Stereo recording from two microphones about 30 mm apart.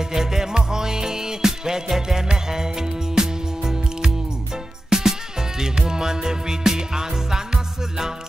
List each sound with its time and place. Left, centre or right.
0.1 s music: centre